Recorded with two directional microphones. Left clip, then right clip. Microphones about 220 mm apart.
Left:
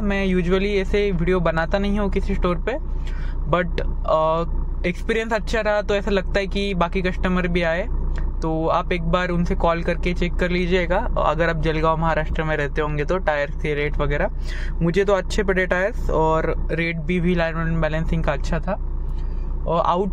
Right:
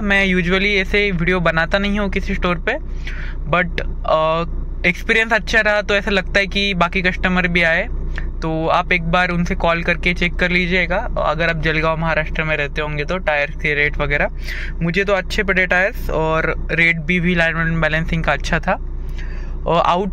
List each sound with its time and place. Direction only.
0.0 s speech: centre (ahead or behind)